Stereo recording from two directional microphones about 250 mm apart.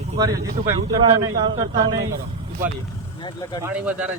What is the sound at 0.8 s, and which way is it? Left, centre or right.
Speech, right.